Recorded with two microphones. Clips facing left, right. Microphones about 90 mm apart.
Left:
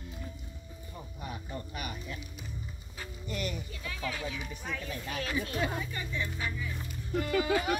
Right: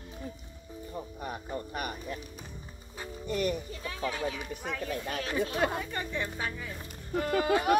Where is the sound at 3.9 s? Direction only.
30° right (ahead or behind).